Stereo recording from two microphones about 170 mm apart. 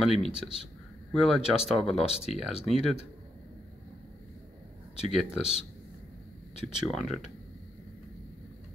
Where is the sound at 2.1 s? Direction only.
35° left (ahead or behind).